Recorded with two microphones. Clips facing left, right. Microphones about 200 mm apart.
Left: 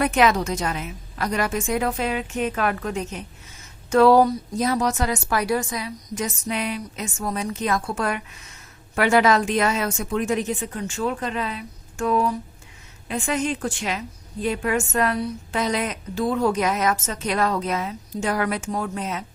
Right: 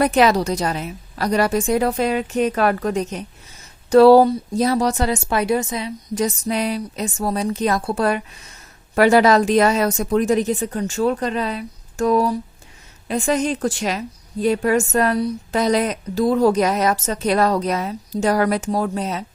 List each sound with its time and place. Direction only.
0.0 s a woman's voice: 35° right (ahead or behind)